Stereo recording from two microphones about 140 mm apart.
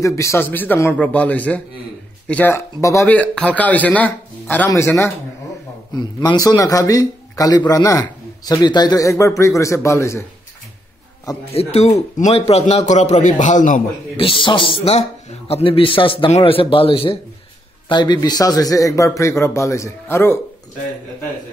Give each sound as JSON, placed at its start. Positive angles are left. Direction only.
{"t": 0.0, "sound": "a man's voice", "side_deg": 20}
{"t": 3.1, "sound": "a man's voice", "side_deg": 10}
{"t": 5.9, "sound": "a man's voice", "side_deg": 30}
{"t": 11.5, "sound": "a man's voice", "side_deg": 50}
{"t": 14.1, "sound": "a man's voice", "side_deg": 40}